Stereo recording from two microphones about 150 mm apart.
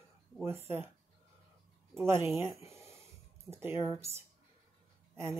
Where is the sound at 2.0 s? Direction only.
15° right (ahead or behind).